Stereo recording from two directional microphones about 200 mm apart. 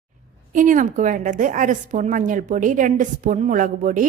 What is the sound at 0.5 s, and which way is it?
A woman's voice, 40° right (ahead or behind).